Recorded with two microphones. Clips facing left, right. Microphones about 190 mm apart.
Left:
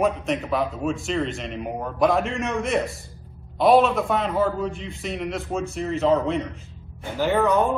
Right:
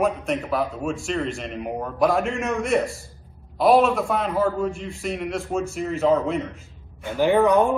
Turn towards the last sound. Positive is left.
turn(degrees=-15)  # may be behind; listen again after turning